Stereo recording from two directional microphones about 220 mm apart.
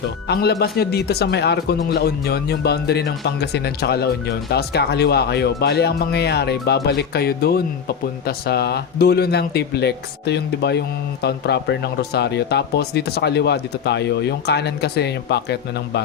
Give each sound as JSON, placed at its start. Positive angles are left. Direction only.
{"t": 0.3, "sound": "speech", "side_deg": 45}